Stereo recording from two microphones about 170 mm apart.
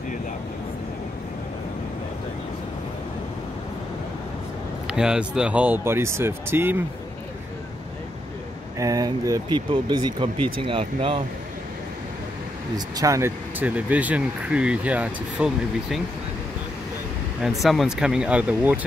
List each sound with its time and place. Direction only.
4.8 s speech: 5° right (ahead or behind)
8.7 s speech: 20° right (ahead or behind)
9.7 s speech: 30° right (ahead or behind)
12.7 s speech: 20° right (ahead or behind); by 16.0 s 5° right (ahead or behind)
17.4 s speech: centre (ahead or behind)